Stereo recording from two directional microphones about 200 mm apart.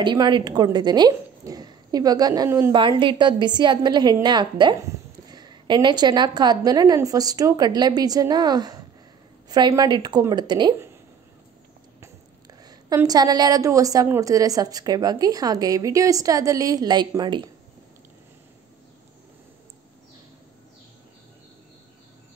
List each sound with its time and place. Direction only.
0.0 s speech: 20° right (ahead or behind)
12.6 s a woman's voice: 20° right (ahead or behind)